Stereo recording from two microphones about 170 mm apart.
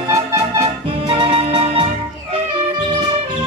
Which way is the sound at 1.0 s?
30° right (ahead or behind).